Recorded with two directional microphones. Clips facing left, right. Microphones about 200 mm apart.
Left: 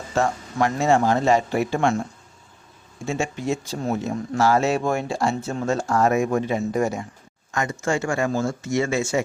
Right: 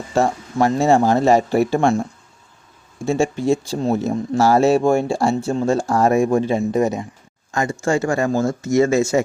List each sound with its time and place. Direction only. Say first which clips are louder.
0.1 s speech: right 4 dB; 35° right (ahead or behind)
3.1 s speech: right 7 dB; 35° right (ahead or behind)
7.5 s speech: right 5 dB; 30° right (ahead or behind)